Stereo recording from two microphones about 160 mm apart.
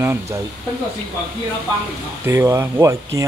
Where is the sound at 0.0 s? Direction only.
15° right (ahead or behind).